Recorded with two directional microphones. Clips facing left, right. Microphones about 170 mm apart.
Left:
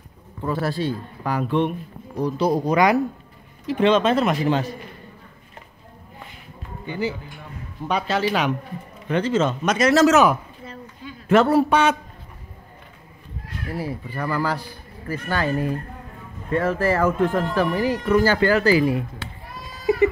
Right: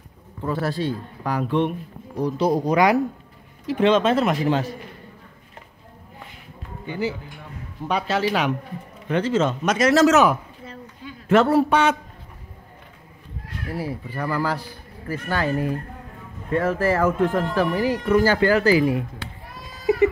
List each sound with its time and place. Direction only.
0.5 s speech: 10° left (ahead or behind)
2.1 s speech: 15° right (ahead or behind)
3.6 s speech: 5° right (ahead or behind)
6.9 s a man's voice: 5° right (ahead or behind)
13.7 s speech: 10° right (ahead or behind)